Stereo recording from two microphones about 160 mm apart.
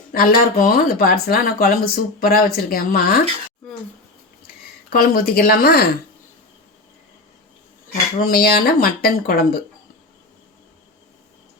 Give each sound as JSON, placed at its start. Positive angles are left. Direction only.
{"t": 0.1, "sound": "speech", "side_deg": 65}
{"t": 4.9, "sound": "speech", "side_deg": 65}
{"t": 8.2, "sound": "speech", "side_deg": 70}